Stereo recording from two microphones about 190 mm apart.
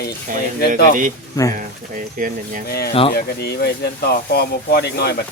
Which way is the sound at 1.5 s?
45° right (ahead or behind).